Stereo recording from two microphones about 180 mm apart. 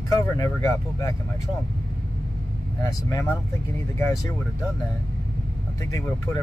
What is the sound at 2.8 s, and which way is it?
Speech, 20° left (ahead or behind).